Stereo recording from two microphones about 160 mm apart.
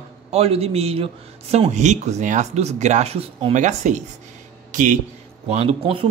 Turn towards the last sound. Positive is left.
turn(degrees=-35)  # may be behind; listen again after turning